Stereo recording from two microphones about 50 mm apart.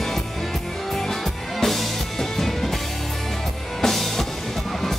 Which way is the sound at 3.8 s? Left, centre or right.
Centre.